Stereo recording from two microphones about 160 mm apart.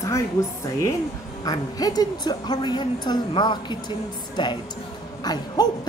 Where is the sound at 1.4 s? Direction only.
25° left (ahead or behind).